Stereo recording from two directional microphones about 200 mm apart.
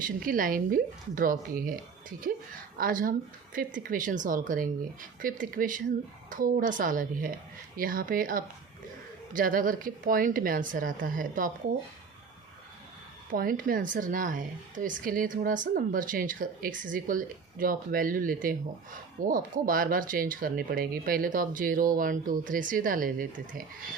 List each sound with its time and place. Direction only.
0.2 s speech: 45° right (ahead or behind)
13.3 s speech: 45° right (ahead or behind)